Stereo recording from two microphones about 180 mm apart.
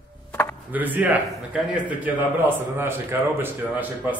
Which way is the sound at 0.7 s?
10° right (ahead or behind).